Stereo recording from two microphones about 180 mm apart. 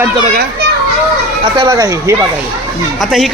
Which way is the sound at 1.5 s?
20° right (ahead or behind).